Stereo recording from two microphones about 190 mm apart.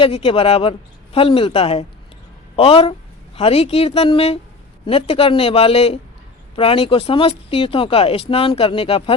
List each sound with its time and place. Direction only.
0.0 s speech: 30° left (ahead or behind)